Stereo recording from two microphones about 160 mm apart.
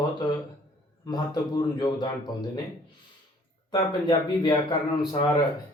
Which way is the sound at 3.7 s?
25° left (ahead or behind).